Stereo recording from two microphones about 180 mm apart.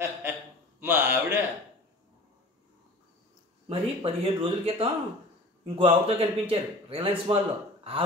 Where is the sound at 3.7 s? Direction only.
30° right (ahead or behind).